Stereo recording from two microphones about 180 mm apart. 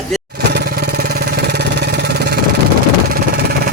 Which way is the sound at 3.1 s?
60° right (ahead or behind).